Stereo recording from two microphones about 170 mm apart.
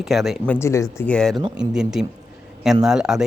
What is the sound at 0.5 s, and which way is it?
Speech, 15° left (ahead or behind).